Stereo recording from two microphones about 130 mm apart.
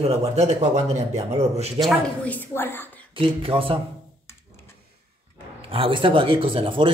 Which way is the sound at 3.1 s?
45° right (ahead or behind).